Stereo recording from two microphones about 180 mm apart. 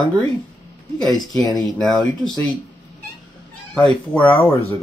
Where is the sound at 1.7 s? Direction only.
Centre (ahead or behind).